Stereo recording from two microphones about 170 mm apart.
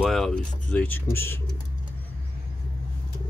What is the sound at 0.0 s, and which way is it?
Speech, 5° left (ahead or behind).